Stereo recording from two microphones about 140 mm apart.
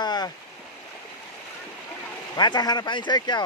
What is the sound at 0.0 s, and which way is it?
Stream, 30° left (ahead or behind).